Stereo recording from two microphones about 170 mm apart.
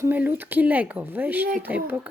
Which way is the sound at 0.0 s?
10° right (ahead or behind).